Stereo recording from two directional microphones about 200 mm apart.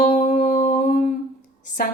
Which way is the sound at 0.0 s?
35° left (ahead or behind).